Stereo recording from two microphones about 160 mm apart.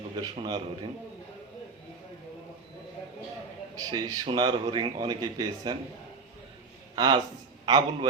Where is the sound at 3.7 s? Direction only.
25° right (ahead or behind).